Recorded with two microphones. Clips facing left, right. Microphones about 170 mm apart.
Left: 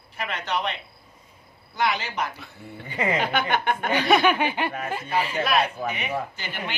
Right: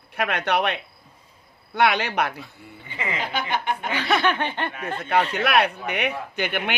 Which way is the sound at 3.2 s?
55° left (ahead or behind).